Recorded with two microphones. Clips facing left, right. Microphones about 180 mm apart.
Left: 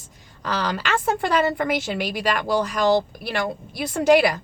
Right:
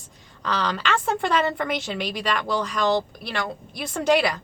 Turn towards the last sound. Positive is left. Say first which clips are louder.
# left 4 dB
turn(degrees=10)  # may be behind; listen again after turning